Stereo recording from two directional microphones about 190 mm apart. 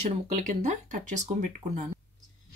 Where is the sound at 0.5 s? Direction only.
40° right (ahead or behind).